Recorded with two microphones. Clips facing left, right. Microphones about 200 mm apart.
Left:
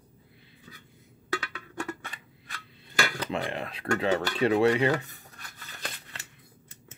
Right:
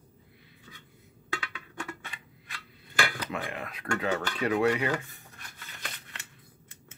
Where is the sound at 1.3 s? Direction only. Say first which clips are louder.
Left 5 dB; 40° left (ahead or behind).